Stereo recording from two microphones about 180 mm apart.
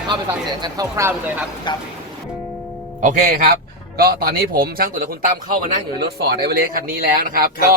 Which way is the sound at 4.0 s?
55° right (ahead or behind).